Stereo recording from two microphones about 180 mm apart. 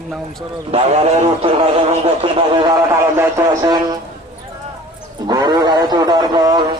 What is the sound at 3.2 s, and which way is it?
Speech, 20° right (ahead or behind).